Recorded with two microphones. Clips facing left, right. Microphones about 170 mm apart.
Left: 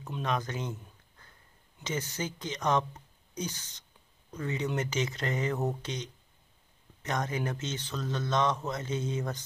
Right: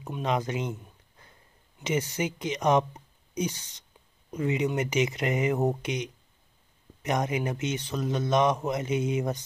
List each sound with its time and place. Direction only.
0.1 s speech: 20° right (ahead or behind)